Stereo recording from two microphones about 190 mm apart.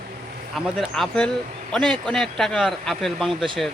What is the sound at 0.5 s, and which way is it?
Speech, centre (ahead or behind).